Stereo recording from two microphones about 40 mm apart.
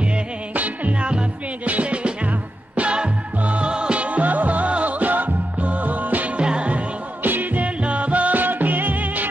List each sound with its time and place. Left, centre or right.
1.7 s music: right
6.3 s music: right
7.2 s music: right
7.6 s music: right